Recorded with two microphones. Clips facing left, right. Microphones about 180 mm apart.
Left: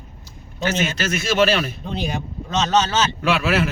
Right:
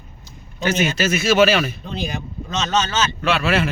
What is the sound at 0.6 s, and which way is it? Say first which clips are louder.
A man's voice: right 2 dB; 15° right (ahead or behind).